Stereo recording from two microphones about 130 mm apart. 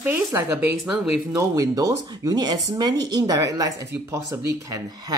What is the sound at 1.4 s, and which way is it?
Speech, 25° right (ahead or behind).